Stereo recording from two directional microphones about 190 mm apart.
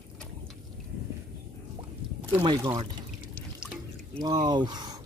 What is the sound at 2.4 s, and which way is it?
Speech, 25° right (ahead or behind).